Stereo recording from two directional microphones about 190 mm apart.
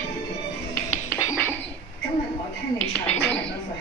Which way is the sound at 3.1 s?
5° left (ahead or behind).